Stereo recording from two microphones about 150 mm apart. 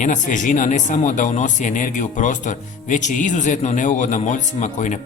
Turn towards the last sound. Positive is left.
turn(degrees=55)  # may be behind; listen again after turning